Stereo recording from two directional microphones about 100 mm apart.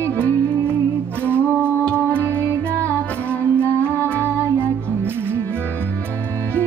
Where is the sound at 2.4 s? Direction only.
25° right (ahead or behind).